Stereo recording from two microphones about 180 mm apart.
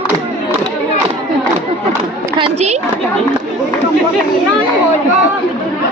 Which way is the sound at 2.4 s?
35° right (ahead or behind).